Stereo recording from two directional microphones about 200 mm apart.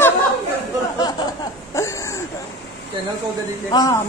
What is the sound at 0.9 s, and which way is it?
Chuckle, 20° left (ahead or behind).